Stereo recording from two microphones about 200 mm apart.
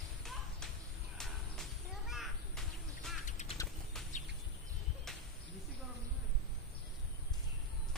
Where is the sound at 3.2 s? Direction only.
35° left (ahead or behind).